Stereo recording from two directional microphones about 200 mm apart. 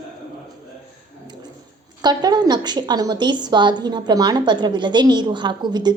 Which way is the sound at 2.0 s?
20° right (ahead or behind).